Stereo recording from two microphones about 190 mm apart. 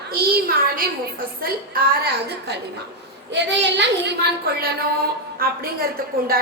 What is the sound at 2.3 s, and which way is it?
A woman's voice, 60° right (ahead or behind).